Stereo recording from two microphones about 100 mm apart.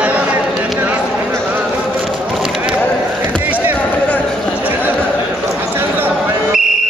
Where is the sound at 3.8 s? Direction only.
15° left (ahead or behind).